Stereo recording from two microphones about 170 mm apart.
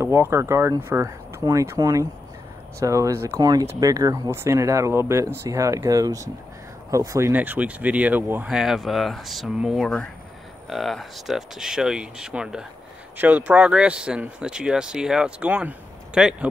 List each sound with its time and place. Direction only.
0.0 s speech: 15° right (ahead or behind)